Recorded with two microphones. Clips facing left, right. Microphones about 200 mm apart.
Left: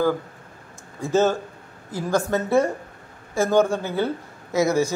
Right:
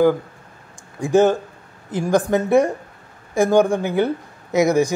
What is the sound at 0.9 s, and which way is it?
Speech, 15° right (ahead or behind).